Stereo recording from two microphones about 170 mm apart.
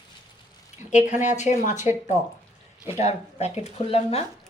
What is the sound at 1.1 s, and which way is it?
Speech, 45° left (ahead or behind).